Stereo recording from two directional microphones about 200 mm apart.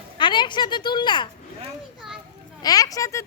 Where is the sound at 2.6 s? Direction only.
20° left (ahead or behind).